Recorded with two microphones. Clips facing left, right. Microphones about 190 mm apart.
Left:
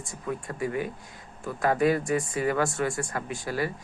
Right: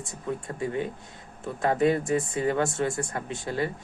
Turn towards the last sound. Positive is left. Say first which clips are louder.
# right 1 dB
turn(degrees=-25)  # may be behind; listen again after turning